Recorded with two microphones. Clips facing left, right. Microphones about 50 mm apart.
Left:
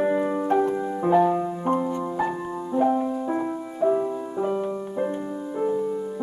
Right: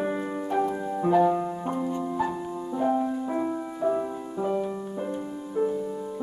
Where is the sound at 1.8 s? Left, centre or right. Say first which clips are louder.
Left 2 dB; left.